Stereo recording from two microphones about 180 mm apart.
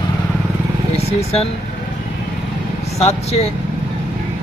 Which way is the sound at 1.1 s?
35° left (ahead or behind).